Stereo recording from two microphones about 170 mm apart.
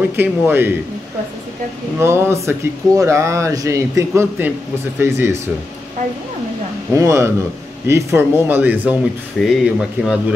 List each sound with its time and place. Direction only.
0.1 s speech: 10° right (ahead or behind)
2.0 s speech: 15° right (ahead or behind)
6.9 s speech: 15° right (ahead or behind)